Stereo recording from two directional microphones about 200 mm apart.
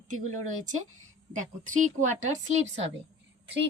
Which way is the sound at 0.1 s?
40° right (ahead or behind).